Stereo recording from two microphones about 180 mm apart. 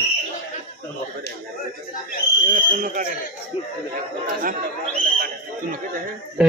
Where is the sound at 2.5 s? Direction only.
50° right (ahead or behind).